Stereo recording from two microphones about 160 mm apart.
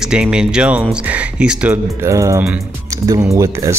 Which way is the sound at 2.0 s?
20° right (ahead or behind).